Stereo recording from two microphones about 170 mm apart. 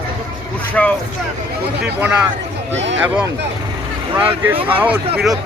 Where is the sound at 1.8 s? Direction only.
5° right (ahead or behind).